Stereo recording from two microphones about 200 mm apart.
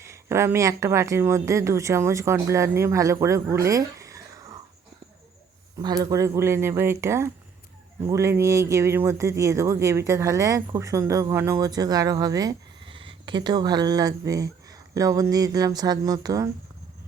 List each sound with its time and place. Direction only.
0.0 s speech: 15° right (ahead or behind)
3.7 s a sound: 15° right (ahead or behind)
5.8 s speech: 20° right (ahead or behind)